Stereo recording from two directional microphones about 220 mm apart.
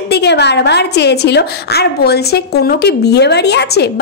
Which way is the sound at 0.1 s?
50° left (ahead or behind).